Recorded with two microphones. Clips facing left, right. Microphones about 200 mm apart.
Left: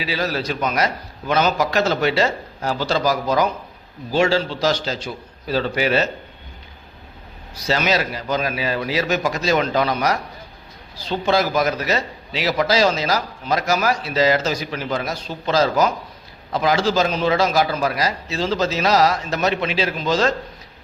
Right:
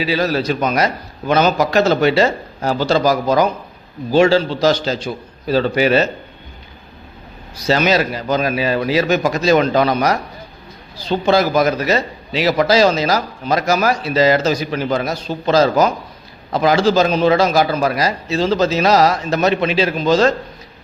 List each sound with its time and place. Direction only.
0.1 s a man's voice: 50° right (ahead or behind)
7.7 s a man's voice: 55° right (ahead or behind)
11.1 s a man's voice: 60° right (ahead or behind)